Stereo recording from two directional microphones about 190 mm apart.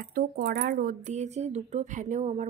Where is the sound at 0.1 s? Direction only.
50° right (ahead or behind).